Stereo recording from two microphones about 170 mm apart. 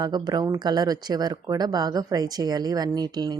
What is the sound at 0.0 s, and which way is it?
Speech, 25° right (ahead or behind).